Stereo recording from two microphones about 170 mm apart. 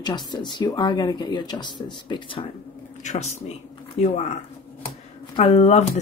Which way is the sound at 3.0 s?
45° left (ahead or behind).